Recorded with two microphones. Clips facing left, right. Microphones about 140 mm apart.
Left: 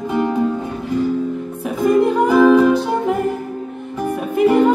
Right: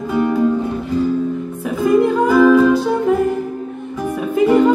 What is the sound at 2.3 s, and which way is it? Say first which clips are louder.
Music: right 1 dB; 15° left (ahead or behind).